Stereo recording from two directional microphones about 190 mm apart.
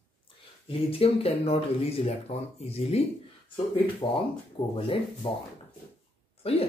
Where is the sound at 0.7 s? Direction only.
30° left (ahead or behind).